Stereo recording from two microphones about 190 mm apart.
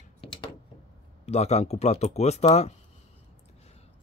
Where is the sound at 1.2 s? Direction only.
35° left (ahead or behind).